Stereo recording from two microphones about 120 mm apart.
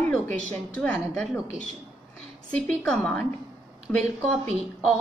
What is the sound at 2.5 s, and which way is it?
A woman's voice, 5° left (ahead or behind).